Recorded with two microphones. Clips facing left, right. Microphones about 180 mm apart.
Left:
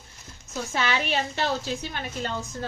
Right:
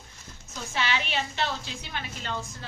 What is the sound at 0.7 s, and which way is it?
A woman's voice, 45° left (ahead or behind).